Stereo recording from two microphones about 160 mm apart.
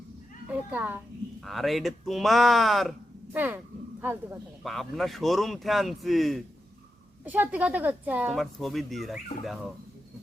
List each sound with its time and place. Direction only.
0.5 s a woman's voice: 10° right (ahead or behind)
3.3 s a woman's voice: 10° right (ahead or behind)
4.6 s speech: centre (ahead or behind)
7.3 s a woman's voice: 10° right (ahead or behind)